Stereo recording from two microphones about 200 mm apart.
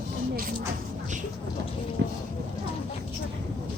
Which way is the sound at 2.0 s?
60° right (ahead or behind).